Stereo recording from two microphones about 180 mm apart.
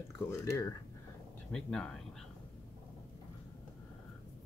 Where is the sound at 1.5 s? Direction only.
5° left (ahead or behind).